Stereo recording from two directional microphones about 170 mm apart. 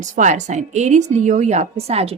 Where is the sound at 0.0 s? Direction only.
45° right (ahead or behind).